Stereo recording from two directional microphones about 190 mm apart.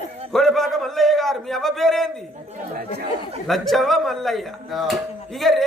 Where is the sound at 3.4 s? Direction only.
Centre (ahead or behind).